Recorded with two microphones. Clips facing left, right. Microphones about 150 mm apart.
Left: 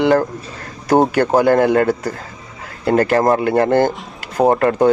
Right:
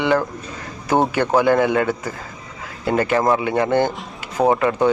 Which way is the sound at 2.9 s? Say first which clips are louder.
Left 4 dB; 50° left (ahead or behind).